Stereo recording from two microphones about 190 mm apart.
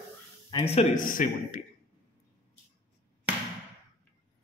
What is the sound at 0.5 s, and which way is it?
A man's voice, 30° left (ahead or behind).